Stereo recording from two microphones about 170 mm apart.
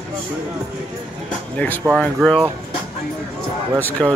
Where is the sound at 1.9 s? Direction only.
Centre (ahead or behind).